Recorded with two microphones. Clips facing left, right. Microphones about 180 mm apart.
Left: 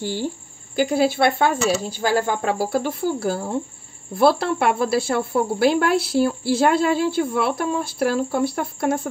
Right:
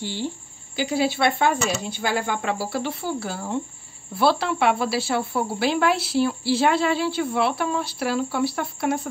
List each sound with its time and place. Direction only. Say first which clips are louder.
0.0 s speech: left 3 dB; 45° left (ahead or behind)